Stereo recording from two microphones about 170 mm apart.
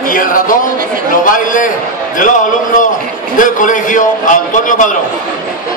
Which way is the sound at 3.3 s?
50° left (ahead or behind).